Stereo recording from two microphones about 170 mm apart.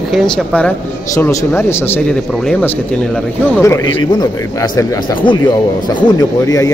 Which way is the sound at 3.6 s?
20° left (ahead or behind).